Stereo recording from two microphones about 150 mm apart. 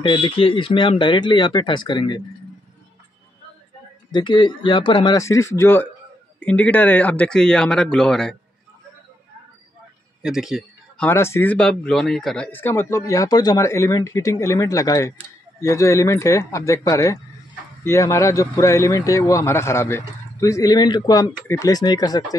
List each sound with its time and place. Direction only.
0.0 s speech: 35° left (ahead or behind)
4.1 s speech: 30° left (ahead or behind); by 8.4 s 5° left (ahead or behind)
10.2 s a sound: 5° right (ahead or behind)
11.1 s speech: 15° left (ahead or behind)